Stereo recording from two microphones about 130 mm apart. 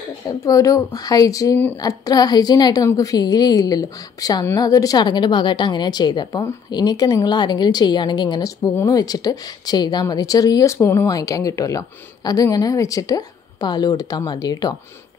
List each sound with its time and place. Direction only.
0.3 s a woman's voice: 25° left (ahead or behind)